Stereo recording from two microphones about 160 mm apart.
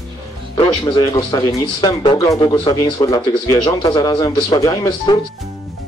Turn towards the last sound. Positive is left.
turn(degrees=25)  # may be behind; listen again after turning